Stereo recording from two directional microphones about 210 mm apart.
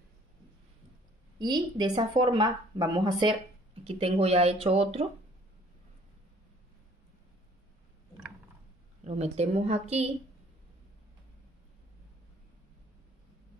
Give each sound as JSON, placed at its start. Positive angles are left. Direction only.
{"t": 1.4, "sound": "speech", "side_deg": -20}
{"t": 9.0, "sound": "a woman's voice", "side_deg": -30}